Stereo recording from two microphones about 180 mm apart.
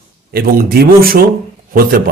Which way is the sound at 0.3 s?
60° right (ahead or behind).